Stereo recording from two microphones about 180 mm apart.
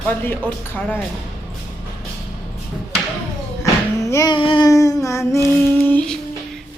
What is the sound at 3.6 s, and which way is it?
Music, 15° left (ahead or behind).